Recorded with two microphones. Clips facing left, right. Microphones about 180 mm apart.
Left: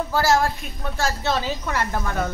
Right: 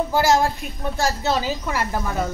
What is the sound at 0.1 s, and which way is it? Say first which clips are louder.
Speech: even; 15° right (ahead or behind).